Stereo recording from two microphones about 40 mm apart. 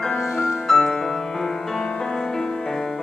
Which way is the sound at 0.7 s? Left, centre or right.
Centre.